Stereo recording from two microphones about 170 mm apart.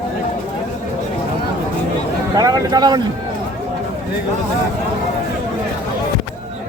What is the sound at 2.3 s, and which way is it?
Speech, 20° right (ahead or behind).